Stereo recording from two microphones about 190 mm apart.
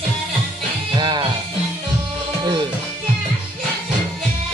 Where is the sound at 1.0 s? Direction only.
25° right (ahead or behind).